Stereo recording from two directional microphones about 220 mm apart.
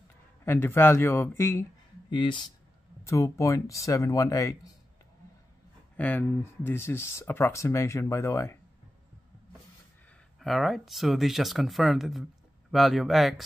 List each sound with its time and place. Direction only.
0.5 s speech: 10° left (ahead or behind)
2.0 s speech: 20° left (ahead or behind)
5.9 s speech: 10° left (ahead or behind)
10.4 s speech: centre (ahead or behind)